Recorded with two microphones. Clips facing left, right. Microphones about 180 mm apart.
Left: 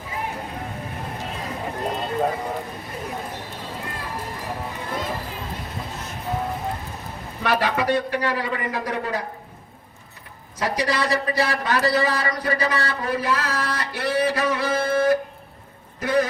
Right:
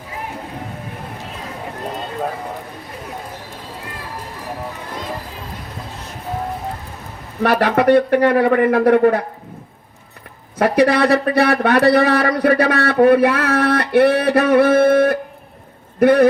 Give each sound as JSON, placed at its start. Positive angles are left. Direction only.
{"t": 7.4, "sound": "speech", "side_deg": -60}
{"t": 10.6, "sound": "speech", "side_deg": -60}